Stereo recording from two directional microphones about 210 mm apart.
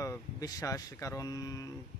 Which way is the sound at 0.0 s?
15° left (ahead or behind).